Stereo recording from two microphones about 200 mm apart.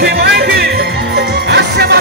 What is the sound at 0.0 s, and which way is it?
Music, 50° right (ahead or behind).